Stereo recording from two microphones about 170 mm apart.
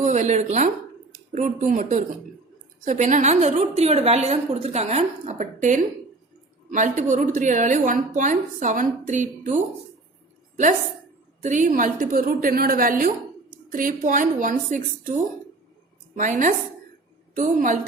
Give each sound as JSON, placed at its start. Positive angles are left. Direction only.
{"t": 0.0, "sound": "a woman's voice", "side_deg": -45}
{"t": 11.4, "sound": "a woman's voice", "side_deg": -50}